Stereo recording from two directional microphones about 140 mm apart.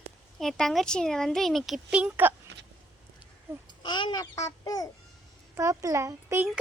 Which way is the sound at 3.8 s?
35° left (ahead or behind).